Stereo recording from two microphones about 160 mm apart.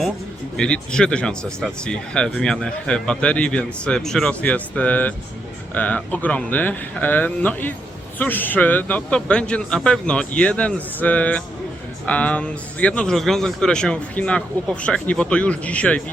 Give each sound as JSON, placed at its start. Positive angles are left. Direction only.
{"t": 0.5, "sound": "a man's voice", "side_deg": 5}